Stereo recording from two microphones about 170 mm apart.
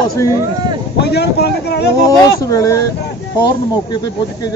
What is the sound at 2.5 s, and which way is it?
Speech, 20° left (ahead or behind).